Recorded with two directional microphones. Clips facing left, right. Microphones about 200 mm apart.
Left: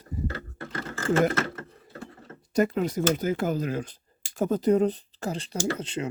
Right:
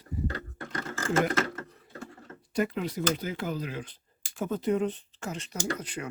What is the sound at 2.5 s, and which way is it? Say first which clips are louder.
Speech: left 5 dB; 45° left (ahead or behind).